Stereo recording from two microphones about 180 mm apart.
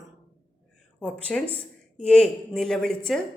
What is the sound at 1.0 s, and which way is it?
A woman's voice, 5° left (ahead or behind).